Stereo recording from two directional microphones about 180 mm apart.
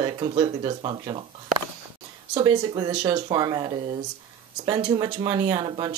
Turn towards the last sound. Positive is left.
turn(degrees=-25)  # may be behind; listen again after turning